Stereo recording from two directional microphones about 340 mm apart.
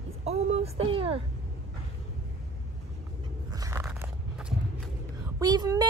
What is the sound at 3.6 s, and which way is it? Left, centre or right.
Biting, centre.